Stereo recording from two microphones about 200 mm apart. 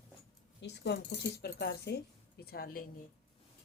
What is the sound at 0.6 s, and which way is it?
Speech, 60° left (ahead or behind).